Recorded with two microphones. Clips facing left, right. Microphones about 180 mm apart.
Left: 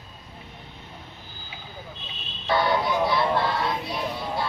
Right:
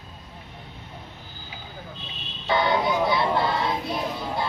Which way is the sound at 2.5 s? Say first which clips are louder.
Even; centre (ahead or behind).